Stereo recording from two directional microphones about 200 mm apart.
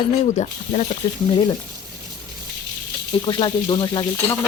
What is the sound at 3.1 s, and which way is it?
Speech, 25° left (ahead or behind).